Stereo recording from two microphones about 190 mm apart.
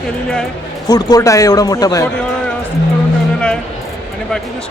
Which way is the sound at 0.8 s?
20° left (ahead or behind).